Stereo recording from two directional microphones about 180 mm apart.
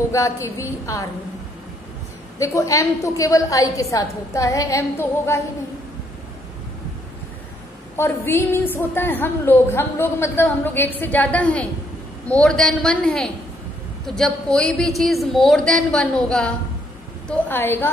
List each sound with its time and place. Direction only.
0.1 s a woman's voice: 15° left (ahead or behind)
2.3 s a woman's voice: 15° left (ahead or behind)
7.9 s a woman's voice: 15° left (ahead or behind)